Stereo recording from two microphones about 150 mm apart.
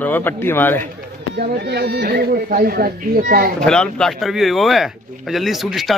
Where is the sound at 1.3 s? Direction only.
90° right.